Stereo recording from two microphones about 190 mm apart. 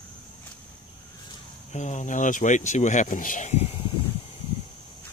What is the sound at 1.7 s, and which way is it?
Speech, 40° left (ahead or behind).